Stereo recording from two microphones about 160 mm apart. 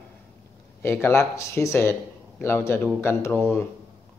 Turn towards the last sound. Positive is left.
turn(degrees=15)  # may be behind; listen again after turning